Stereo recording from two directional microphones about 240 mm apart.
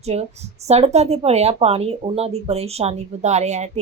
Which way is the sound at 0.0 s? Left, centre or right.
Right.